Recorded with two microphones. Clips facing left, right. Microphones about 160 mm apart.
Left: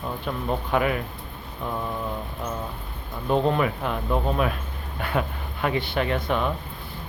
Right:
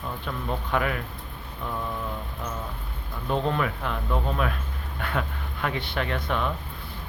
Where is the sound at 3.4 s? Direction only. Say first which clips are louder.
Left 4 dB; 10° left (ahead or behind).